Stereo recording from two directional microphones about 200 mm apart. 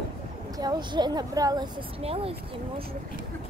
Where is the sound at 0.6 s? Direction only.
20° right (ahead or behind).